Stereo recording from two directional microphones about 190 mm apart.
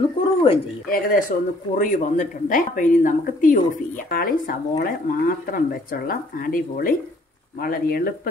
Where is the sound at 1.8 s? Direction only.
45° left (ahead or behind).